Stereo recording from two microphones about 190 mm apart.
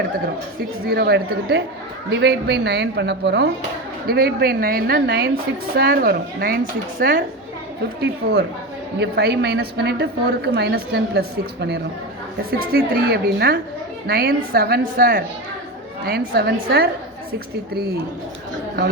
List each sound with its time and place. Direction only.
0.9 s a woman's voice: 60° right (ahead or behind)
16.3 s a woman's voice: 55° right (ahead or behind)